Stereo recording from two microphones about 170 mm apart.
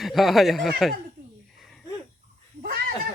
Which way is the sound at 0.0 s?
Centre (ahead or behind).